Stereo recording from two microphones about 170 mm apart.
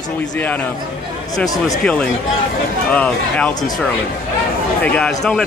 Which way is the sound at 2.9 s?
10° left (ahead or behind).